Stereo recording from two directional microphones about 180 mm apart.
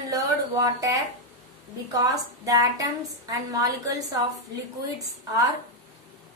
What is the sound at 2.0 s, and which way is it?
Speech, 20° right (ahead or behind).